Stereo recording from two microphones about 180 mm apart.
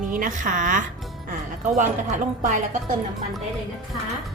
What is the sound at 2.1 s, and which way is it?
Speech, 40° right (ahead or behind).